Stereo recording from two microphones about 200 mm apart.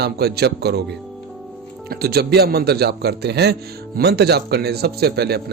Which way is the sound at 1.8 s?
50° right (ahead or behind).